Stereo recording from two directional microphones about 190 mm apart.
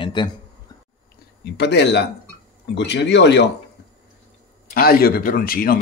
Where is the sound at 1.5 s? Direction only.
65° left (ahead or behind).